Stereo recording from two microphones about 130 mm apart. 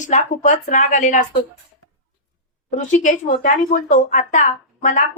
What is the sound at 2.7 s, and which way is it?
A woman's voice, 70° left (ahead or behind).